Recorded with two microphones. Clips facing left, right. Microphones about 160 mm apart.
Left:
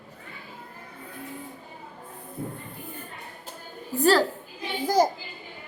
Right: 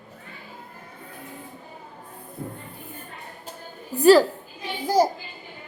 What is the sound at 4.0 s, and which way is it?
Speech, 15° right (ahead or behind).